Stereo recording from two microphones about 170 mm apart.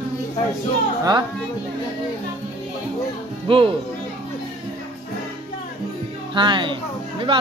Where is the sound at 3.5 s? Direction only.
30° right (ahead or behind).